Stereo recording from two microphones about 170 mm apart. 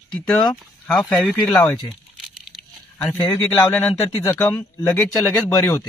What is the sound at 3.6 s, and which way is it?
Speech, 5° left (ahead or behind).